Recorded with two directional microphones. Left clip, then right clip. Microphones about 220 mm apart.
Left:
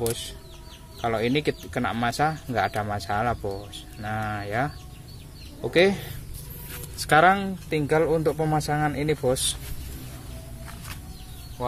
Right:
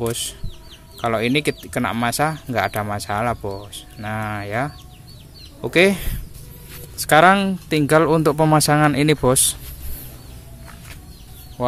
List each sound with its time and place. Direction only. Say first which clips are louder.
0.1 s speech: right 5 dB; 25° right (ahead or behind)
7.2 s speech: right 6 dB; 35° right (ahead or behind)